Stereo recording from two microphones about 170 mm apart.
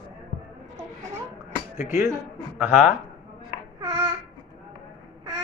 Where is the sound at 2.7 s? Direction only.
45° left (ahead or behind).